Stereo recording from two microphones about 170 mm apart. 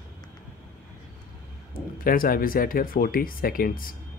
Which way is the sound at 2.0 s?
60° left (ahead or behind).